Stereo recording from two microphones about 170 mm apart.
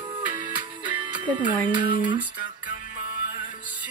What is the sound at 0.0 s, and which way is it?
Music, 30° right (ahead or behind).